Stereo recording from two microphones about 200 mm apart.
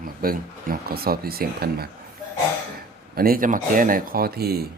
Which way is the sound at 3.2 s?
45° right (ahead or behind).